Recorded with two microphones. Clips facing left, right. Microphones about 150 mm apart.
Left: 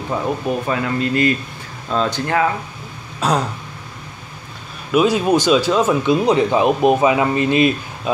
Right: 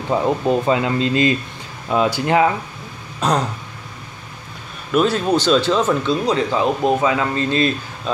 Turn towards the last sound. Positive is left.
turn(degrees=15)  # may be behind; listen again after turning